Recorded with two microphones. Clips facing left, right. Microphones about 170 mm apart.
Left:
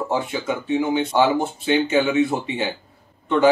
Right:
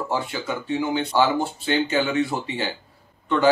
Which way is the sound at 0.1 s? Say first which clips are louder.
Left 3 dB; 20° left (ahead or behind).